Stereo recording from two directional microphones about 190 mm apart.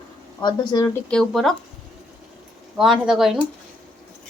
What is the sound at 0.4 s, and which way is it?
Speech, 20° left (ahead or behind).